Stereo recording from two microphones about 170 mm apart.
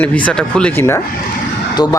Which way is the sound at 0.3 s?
5° left (ahead or behind).